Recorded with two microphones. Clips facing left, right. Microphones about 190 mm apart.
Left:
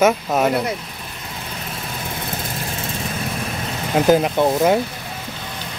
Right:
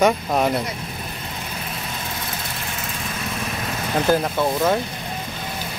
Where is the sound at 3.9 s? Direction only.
20° left (ahead or behind).